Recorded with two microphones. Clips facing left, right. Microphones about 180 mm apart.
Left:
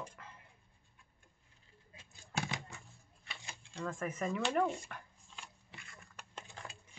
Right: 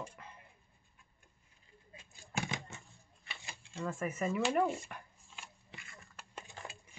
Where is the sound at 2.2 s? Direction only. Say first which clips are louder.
Even; 10° right (ahead or behind).